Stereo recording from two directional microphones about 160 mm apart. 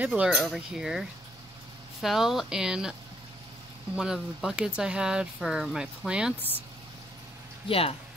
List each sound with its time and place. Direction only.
0.0 s speech: 5° right (ahead or behind)
7.6 s speech: 35° left (ahead or behind)